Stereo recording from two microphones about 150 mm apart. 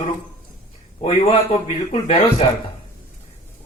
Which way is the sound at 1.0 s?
40° left (ahead or behind).